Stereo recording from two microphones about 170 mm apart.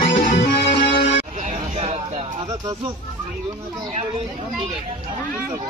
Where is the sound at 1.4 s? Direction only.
40° right (ahead or behind).